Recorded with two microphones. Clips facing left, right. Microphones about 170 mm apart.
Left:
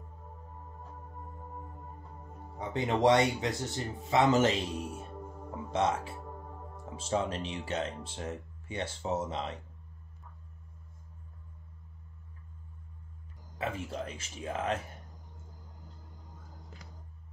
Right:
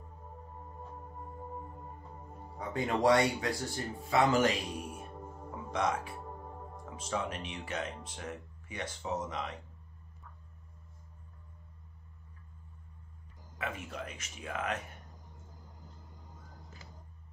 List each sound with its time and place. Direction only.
2.7 s speech: 20° left (ahead or behind)
13.6 s speech: 30° left (ahead or behind)